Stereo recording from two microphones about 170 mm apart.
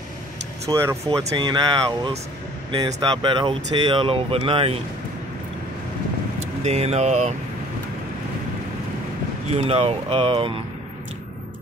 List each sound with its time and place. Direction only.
0.7 s speech: 20° right (ahead or behind)
6.6 s speech: 40° right (ahead or behind)
9.5 s speech: 35° right (ahead or behind)